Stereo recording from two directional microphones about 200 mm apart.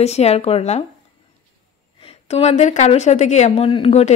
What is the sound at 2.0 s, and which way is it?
Speech, 30° left (ahead or behind).